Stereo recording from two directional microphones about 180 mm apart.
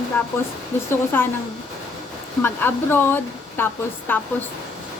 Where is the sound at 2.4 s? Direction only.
10° left (ahead or behind).